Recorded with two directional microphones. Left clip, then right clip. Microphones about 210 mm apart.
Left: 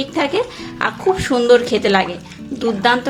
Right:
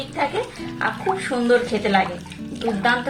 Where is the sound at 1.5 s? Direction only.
45° left (ahead or behind).